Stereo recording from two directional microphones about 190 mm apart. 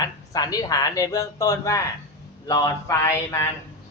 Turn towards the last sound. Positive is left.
turn(degrees=15)  # may be behind; listen again after turning